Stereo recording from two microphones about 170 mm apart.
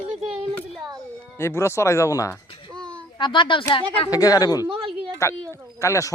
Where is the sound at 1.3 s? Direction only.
15° left (ahead or behind).